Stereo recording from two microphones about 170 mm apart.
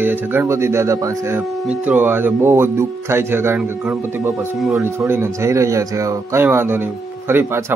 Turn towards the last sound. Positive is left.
turn(degrees=-15)  # may be behind; listen again after turning